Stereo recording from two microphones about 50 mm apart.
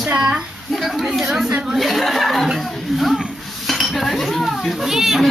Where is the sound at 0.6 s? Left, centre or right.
Centre.